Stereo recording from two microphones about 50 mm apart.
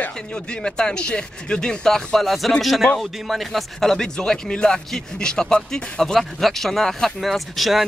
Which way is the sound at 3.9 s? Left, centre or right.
Centre.